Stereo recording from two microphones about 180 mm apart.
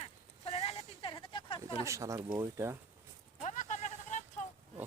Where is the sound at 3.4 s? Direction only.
45° left (ahead or behind).